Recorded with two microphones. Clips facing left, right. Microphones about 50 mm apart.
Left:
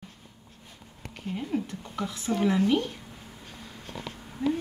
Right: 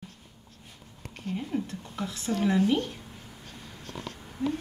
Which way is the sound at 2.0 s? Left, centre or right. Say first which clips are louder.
Left 2 dB; centre.